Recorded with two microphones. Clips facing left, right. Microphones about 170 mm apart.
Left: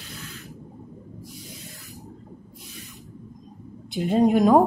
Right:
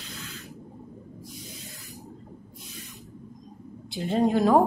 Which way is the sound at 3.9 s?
20° left (ahead or behind).